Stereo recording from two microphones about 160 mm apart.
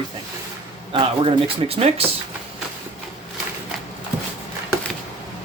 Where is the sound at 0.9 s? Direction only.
35° right (ahead or behind).